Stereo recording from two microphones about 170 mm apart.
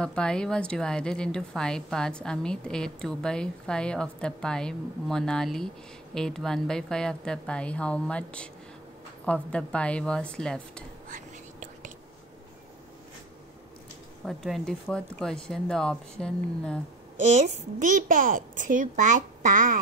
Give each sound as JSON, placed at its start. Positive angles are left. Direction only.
{"t": 0.0, "sound": "a woman's voice", "side_deg": 5}
{"t": 11.1, "sound": "whispering", "side_deg": -50}
{"t": 14.2, "sound": "a woman's voice", "side_deg": 0}
{"t": 17.2, "sound": "a child's voice", "side_deg": -45}